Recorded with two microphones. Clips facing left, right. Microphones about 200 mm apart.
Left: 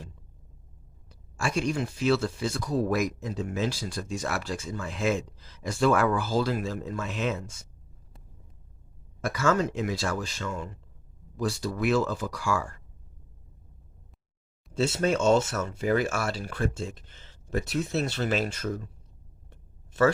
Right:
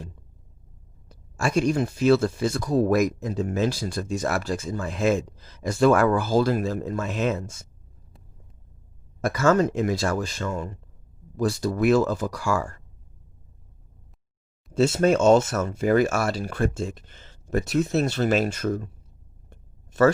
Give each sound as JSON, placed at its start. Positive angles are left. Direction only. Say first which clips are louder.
{"t": 1.0, "sound": "speech", "louder": "right 5 dB", "side_deg": -40}
{"t": 9.2, "sound": "speech", "louder": "right 5 dB", "side_deg": -45}
{"t": 14.8, "sound": "speech", "louder": "right 6 dB", "side_deg": -45}